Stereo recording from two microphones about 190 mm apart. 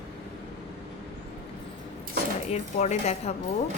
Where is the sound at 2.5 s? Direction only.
35° left (ahead or behind).